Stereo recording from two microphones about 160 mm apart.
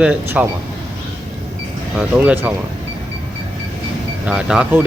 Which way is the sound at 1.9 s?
5° right (ahead or behind).